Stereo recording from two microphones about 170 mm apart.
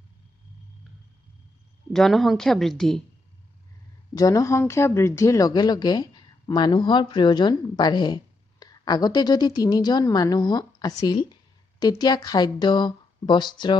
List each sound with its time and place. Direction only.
1.9 s a woman's voice: centre (ahead or behind)
4.2 s speech: 20° left (ahead or behind)